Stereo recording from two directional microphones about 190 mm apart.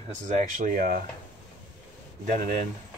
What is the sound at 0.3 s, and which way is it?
Speech, 45° right (ahead or behind).